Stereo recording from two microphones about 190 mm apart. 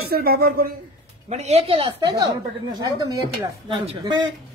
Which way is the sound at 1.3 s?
35° right (ahead or behind).